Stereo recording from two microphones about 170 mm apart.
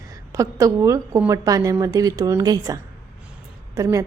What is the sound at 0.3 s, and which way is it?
A woman's voice, 20° right (ahead or behind).